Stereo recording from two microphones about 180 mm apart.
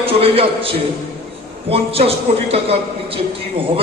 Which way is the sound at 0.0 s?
30° right (ahead or behind).